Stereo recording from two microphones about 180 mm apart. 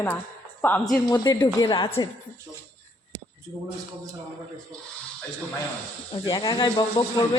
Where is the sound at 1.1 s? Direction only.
20° left (ahead or behind).